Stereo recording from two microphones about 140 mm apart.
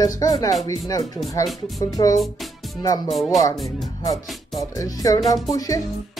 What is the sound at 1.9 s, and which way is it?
Speech, 25° left (ahead or behind).